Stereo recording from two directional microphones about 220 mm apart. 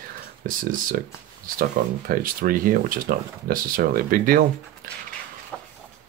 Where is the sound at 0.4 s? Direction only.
40° right (ahead or behind).